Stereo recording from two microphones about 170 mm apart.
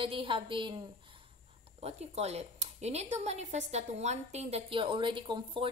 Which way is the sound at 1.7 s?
40° right (ahead or behind).